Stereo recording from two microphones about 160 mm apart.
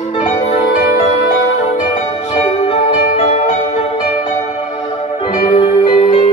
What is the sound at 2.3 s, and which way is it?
Music, 45° left (ahead or behind).